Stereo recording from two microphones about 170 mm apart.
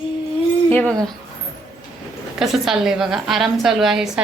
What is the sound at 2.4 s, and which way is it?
A woman's voice, centre (ahead or behind).